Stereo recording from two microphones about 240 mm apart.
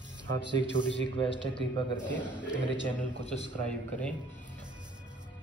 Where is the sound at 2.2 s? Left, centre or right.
Centre.